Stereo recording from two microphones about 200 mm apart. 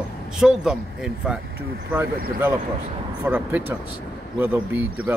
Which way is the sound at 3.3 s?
10° right (ahead or behind).